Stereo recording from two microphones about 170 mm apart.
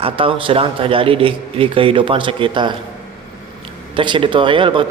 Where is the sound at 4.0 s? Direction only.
30° right (ahead or behind).